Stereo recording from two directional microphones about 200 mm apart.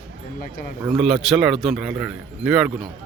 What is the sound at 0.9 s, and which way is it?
Speech, centre (ahead or behind).